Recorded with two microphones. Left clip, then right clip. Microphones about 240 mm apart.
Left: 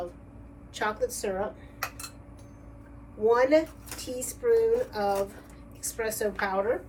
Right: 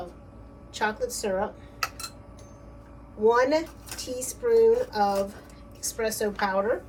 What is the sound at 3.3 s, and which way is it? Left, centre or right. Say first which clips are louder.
A woman's voice: even; centre.